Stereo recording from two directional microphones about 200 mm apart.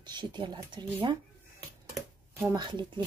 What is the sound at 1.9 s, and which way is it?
Speech, 10° right (ahead or behind).